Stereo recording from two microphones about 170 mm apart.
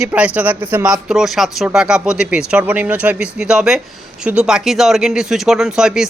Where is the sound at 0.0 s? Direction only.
10° right (ahead or behind).